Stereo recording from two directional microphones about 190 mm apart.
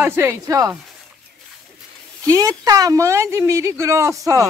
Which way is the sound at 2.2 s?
20° right (ahead or behind).